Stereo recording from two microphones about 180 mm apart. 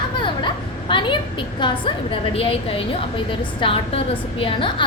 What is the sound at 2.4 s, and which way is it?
A woman's voice, 30° left (ahead or behind).